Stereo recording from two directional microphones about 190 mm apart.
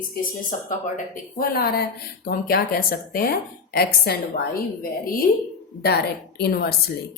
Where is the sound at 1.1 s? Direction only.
50° left (ahead or behind).